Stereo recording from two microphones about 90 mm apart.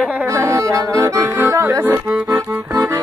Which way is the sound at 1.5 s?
30° right (ahead or behind).